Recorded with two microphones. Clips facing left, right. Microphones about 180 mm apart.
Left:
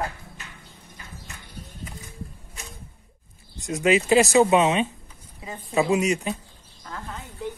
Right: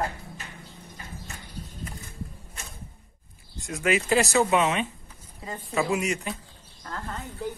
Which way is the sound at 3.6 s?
20° left (ahead or behind).